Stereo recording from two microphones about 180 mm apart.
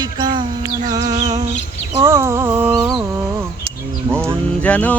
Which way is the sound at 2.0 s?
15° right (ahead or behind).